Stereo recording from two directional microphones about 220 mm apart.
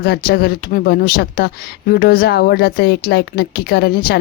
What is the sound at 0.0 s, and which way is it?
Speech, 45° left (ahead or behind).